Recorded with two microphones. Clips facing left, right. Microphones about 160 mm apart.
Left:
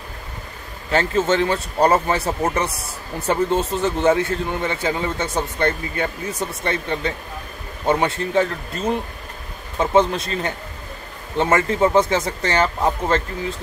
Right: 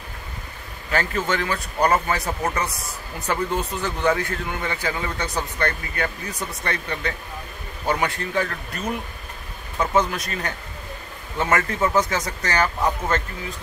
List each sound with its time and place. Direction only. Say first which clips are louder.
0.9 s speech: left 6 dB; 25° left (ahead or behind)